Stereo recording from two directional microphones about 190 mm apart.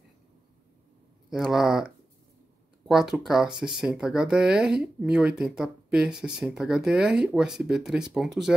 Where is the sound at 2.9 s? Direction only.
Centre (ahead or behind).